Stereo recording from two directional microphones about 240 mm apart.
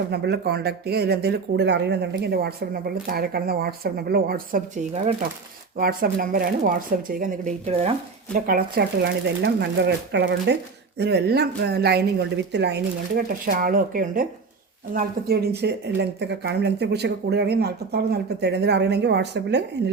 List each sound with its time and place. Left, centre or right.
0.1 s speech: right
8.4 s speech: right